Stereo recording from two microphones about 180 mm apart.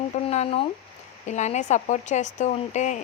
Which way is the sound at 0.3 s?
35° left (ahead or behind).